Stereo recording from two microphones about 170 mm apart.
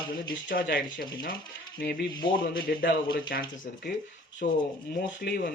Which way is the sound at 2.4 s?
60° left (ahead or behind).